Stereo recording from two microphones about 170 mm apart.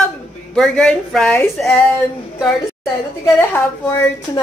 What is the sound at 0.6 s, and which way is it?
Speech, 5° left (ahead or behind).